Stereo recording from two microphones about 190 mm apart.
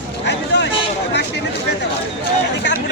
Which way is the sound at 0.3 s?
65° left (ahead or behind).